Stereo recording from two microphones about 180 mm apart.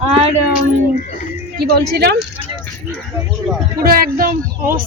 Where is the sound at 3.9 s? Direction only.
55° right (ahead or behind).